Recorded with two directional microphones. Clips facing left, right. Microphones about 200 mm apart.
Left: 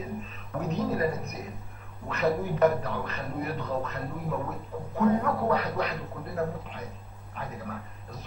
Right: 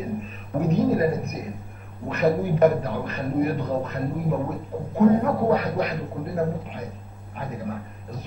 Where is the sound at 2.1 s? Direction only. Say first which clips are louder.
Right 5 dB; 15° right (ahead or behind).